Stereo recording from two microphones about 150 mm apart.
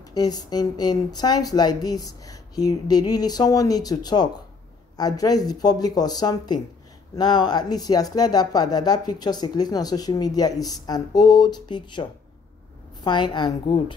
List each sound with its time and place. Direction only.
0.1 s a woman's voice: 25° left (ahead or behind)